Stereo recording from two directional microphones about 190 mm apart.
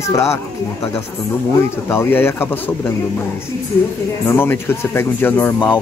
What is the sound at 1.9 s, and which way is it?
Speech, 10° left (ahead or behind).